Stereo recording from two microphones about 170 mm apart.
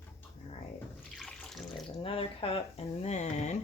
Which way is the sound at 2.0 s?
35° left (ahead or behind).